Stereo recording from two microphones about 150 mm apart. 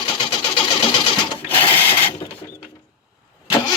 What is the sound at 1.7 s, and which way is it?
Sewing machine, 15° left (ahead or behind).